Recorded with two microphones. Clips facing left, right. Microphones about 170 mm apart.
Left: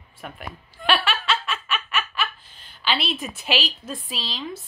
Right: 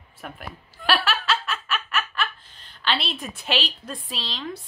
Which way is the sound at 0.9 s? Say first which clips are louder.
Right 1 dB; centre (ahead or behind).